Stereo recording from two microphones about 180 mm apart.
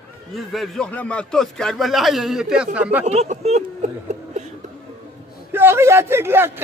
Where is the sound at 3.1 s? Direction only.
35° right (ahead or behind).